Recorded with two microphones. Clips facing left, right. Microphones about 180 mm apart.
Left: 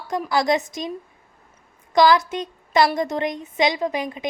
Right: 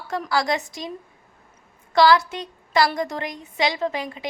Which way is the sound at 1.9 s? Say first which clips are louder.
Left 1 dB; 20° left (ahead or behind).